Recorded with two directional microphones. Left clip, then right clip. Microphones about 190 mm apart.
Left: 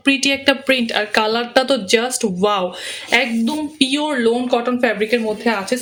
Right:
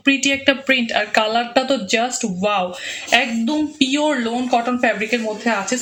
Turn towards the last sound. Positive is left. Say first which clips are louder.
# left 1 dB
turn(degrees=30)  # may be behind; listen again after turning